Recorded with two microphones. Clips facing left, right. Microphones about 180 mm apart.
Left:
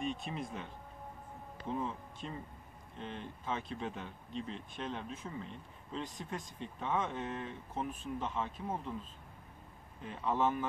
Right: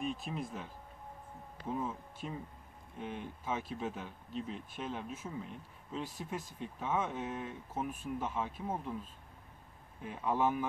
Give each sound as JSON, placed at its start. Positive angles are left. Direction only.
{"t": 0.0, "sound": "speech", "side_deg": 0}
{"t": 10.0, "sound": "speech", "side_deg": -10}